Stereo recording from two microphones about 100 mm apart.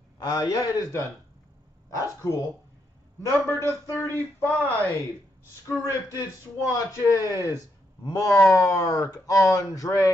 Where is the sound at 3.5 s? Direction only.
25° left (ahead or behind).